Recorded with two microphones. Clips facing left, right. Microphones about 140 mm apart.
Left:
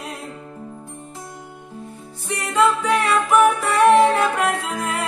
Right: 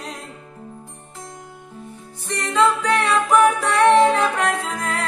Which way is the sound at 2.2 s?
10° left (ahead or behind).